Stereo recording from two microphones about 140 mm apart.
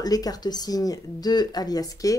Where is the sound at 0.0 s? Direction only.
25° left (ahead or behind).